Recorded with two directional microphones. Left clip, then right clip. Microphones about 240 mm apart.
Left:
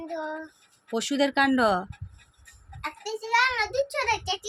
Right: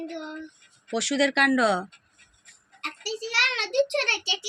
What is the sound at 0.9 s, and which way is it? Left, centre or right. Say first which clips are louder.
Speech: right 1 dB; left.